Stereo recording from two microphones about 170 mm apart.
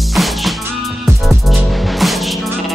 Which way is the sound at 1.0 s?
Centre (ahead or behind).